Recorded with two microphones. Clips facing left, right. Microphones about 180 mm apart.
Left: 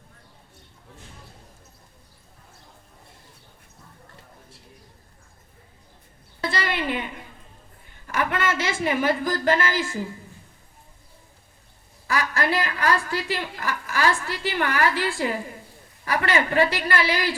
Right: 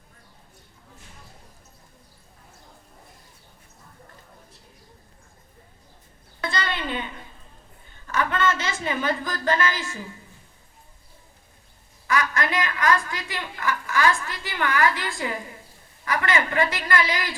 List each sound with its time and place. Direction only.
6.4 s a sound: 25° left (ahead or behind)
8.0 s a woman's voice: 20° left (ahead or behind)
9.8 s a woman's voice: 35° left (ahead or behind)
12.0 s a woman's voice: 30° left (ahead or behind)